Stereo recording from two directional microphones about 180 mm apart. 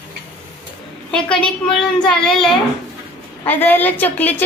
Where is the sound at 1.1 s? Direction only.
5° left (ahead or behind).